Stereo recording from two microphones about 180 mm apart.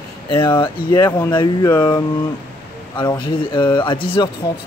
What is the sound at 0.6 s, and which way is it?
Speech, 25° left (ahead or behind).